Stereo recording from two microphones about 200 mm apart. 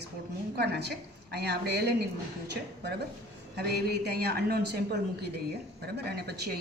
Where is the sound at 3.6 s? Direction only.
55° right (ahead or behind).